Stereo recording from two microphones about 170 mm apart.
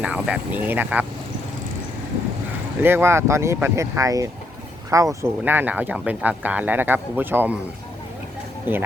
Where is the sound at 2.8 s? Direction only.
15° right (ahead or behind).